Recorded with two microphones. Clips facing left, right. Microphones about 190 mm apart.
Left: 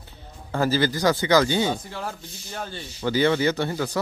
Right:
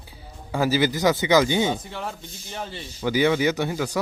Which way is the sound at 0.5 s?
10° right (ahead or behind).